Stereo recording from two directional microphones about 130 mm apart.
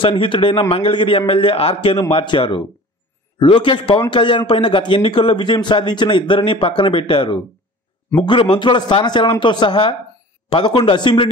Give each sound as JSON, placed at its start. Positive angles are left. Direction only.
{"t": 0.0, "sound": "a man's voice", "side_deg": 40}